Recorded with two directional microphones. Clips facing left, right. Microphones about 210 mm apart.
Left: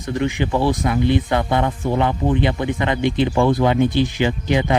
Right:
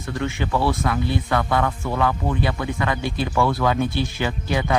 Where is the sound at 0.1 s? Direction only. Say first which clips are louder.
Left 4 dB; 20° left (ahead or behind).